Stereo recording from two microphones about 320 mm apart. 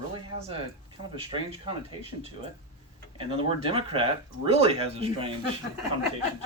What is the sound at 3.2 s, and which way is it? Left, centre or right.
Speech, centre.